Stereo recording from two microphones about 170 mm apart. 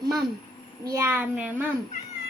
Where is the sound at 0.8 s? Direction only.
20° right (ahead or behind).